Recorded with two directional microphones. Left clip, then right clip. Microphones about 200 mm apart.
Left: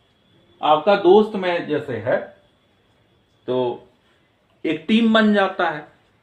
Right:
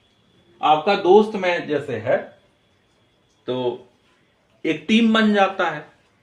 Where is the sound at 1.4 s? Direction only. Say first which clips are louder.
Even; 15° left (ahead or behind).